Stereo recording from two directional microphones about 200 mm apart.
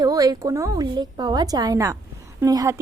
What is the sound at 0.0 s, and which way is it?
A woman's voice, 20° right (ahead or behind).